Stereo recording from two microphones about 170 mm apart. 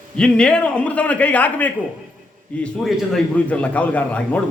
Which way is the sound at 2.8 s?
5° left (ahead or behind).